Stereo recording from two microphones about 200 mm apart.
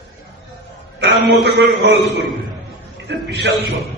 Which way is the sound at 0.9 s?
55° right (ahead or behind).